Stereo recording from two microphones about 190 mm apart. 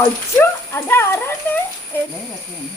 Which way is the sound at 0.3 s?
15° left (ahead or behind).